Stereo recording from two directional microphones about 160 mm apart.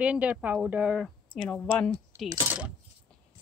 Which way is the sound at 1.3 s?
5° left (ahead or behind).